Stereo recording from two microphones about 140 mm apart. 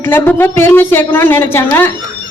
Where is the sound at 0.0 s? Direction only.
15° left (ahead or behind).